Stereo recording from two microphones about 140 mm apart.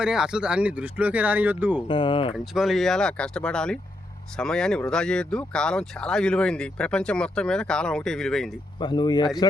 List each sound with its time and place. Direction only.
0.0 s speech: 5° right (ahead or behind)
1.9 s speech: 40° left (ahead or behind)
2.3 s speech: centre (ahead or behind)
8.8 s speech: 30° left (ahead or behind)